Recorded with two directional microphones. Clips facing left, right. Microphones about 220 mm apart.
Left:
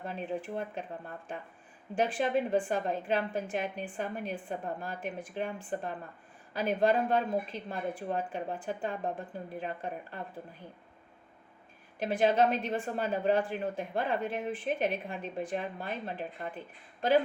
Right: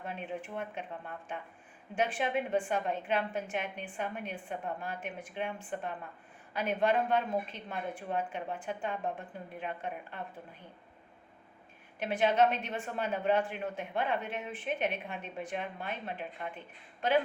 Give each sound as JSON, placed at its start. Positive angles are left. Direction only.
{"t": 0.0, "sound": "speech", "side_deg": 35}
{"t": 11.9, "sound": "speech", "side_deg": 35}